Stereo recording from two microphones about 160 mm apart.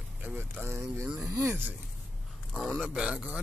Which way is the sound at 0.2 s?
10° right (ahead or behind).